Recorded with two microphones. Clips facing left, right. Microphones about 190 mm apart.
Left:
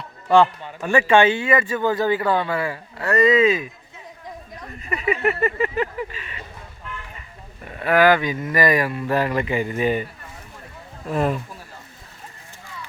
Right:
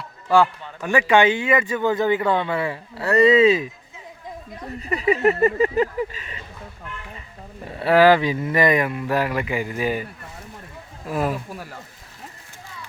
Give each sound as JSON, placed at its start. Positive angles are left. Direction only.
{"t": 0.9, "sound": "speech", "side_deg": -15}
{"t": 4.6, "sound": "a sound", "side_deg": -30}
{"t": 7.7, "sound": "speech", "side_deg": -30}
{"t": 11.1, "sound": "speech", "side_deg": -5}